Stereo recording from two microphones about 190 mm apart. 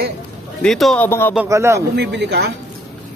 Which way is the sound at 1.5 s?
15° right (ahead or behind).